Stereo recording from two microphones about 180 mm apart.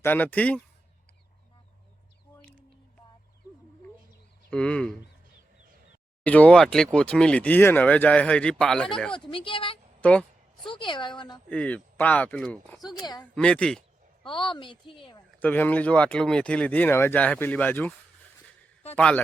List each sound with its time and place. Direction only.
0.0 s speech: 10° left (ahead or behind)
2.3 s a sound: 5° left (ahead or behind)
4.5 s speech: 5° left (ahead or behind)
6.2 s speech: 10° left (ahead or behind)
9.3 s a woman's voice: 30° left (ahead or behind)
10.0 s a sound: 5° left (ahead or behind)
10.7 s a woman's voice: 25° left (ahead or behind)
11.4 s speech: 5° left (ahead or behind)
12.8 s a woman's voice: 25° left (ahead or behind)
13.3 s speech: 5° left (ahead or behind)
14.3 s a woman's voice: 25° left (ahead or behind)
15.4 s speech: 10° left (ahead or behind)
18.9 s speech: 5° left (ahead or behind)